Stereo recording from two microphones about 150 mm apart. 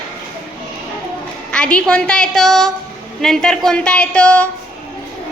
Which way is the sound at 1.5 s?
5° left (ahead or behind).